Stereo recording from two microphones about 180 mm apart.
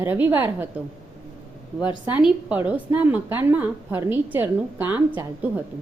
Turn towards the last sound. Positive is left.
turn(degrees=-10)  # may be behind; listen again after turning